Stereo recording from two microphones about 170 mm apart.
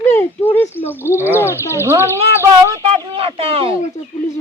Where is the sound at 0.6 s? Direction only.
15° left (ahead or behind).